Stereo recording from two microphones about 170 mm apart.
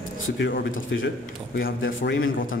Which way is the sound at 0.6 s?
90° left.